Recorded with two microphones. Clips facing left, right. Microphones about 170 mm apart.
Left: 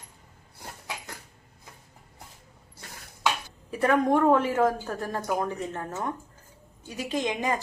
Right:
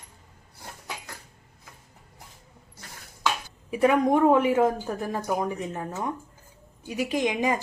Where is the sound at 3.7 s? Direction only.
15° right (ahead or behind).